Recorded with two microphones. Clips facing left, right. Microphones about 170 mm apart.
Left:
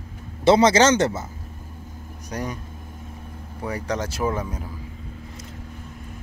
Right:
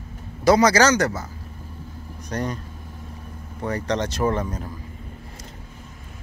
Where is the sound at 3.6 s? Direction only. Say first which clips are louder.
Right 2 dB; 10° left (ahead or behind).